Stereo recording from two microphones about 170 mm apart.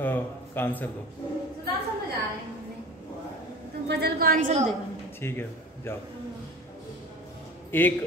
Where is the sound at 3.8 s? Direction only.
70° right (ahead or behind).